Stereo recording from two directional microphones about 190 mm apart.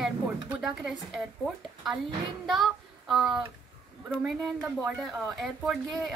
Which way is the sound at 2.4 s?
Centre (ahead or behind).